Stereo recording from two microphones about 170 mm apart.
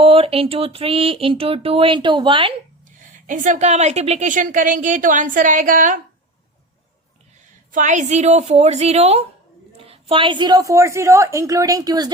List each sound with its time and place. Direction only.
0.0 s speech: 35° right (ahead or behind)
3.2 s a woman's voice: 50° right (ahead or behind)
7.7 s a woman's voice: 45° right (ahead or behind); by 12.1 s 25° right (ahead or behind)